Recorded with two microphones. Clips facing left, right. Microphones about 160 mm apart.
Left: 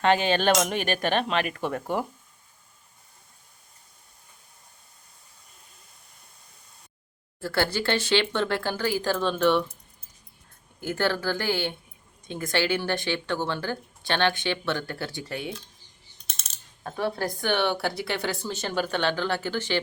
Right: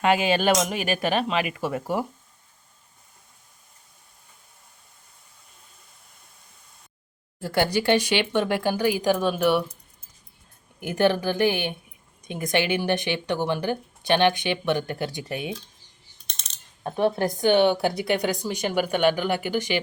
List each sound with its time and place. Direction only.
0.0 s speech: 10° right (ahead or behind)
7.3 s speech: 15° right (ahead or behind)
10.8 s speech: 15° right (ahead or behind)
16.2 s a sound: 5° left (ahead or behind)
16.8 s speech: 20° right (ahead or behind)